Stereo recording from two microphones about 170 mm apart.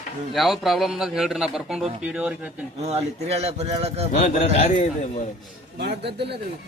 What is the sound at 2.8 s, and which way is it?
A man's voice, 40° right (ahead or behind).